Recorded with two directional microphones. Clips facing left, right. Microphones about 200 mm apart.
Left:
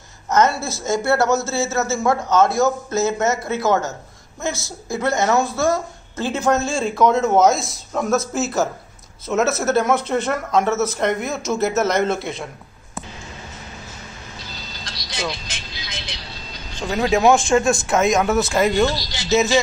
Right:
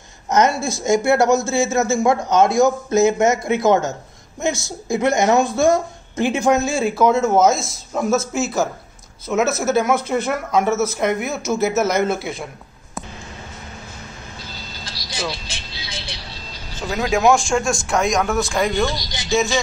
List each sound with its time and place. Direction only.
0.3 s a woman's voice: 15° right (ahead or behind)
14.9 s music: 5° right (ahead or behind)
16.7 s a sound: 5° right (ahead or behind)
17.0 s speech: centre (ahead or behind)